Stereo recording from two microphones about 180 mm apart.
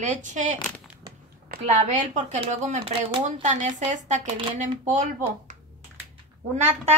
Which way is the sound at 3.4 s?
40° right (ahead or behind).